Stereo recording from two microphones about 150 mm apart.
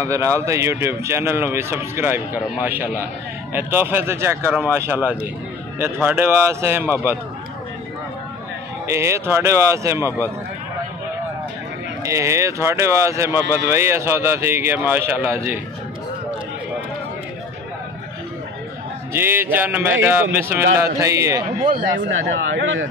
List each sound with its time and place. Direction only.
0.0 s speech: 20° right (ahead or behind)
8.8 s speech: 20° right (ahead or behind)
12.0 s speech: 20° right (ahead or behind)
19.1 s speech: 15° right (ahead or behind)
21.5 s speech: 65° right (ahead or behind)